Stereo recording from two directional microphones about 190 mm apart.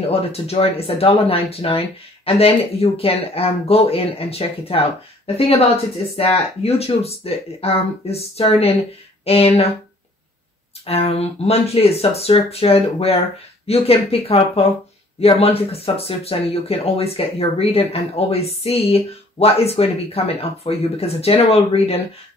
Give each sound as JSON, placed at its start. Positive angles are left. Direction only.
{"t": 0.1, "sound": "speech", "side_deg": 30}
{"t": 6.6, "sound": "speech", "side_deg": 30}
{"t": 10.9, "sound": "speech", "side_deg": 30}